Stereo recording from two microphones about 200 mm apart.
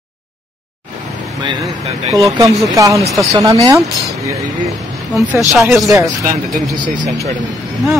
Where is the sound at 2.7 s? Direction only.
15° right (ahead or behind).